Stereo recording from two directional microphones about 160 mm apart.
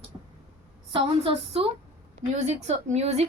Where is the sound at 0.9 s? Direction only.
35° right (ahead or behind).